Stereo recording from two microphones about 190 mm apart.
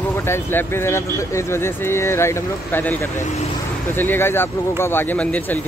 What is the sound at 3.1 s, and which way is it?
Speech, 40° left (ahead or behind).